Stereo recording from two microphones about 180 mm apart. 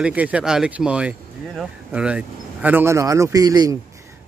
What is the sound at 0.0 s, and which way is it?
Speech, 10° right (ahead or behind).